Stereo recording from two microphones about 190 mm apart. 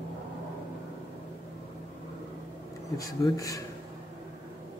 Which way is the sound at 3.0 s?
20° left (ahead or behind).